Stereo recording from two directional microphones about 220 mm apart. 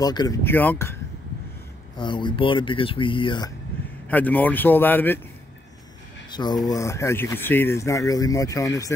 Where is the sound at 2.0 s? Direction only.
20° left (ahead or behind).